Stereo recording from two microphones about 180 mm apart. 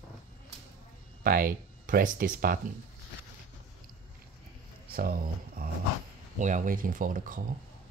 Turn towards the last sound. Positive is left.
turn(degrees=-50)  # may be behind; listen again after turning